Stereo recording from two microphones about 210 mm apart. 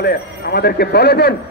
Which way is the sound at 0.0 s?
50° left (ahead or behind).